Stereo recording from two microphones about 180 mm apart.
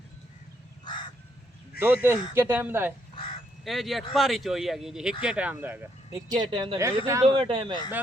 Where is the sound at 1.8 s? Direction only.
10° right (ahead or behind).